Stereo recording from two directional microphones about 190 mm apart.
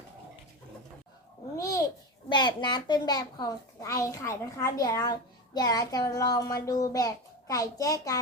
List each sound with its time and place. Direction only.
1.5 s babbling: 15° left (ahead or behind)
2.3 s a child's voice: 25° left (ahead or behind)